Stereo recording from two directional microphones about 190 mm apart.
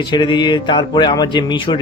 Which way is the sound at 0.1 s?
25° left (ahead or behind).